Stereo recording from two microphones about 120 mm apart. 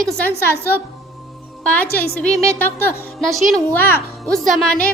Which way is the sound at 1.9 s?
15° left (ahead or behind).